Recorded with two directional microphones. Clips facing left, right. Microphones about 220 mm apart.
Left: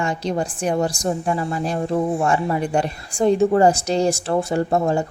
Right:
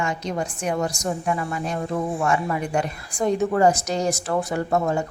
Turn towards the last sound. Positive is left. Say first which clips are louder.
# left 3 dB
turn(degrees=30)  # may be behind; listen again after turning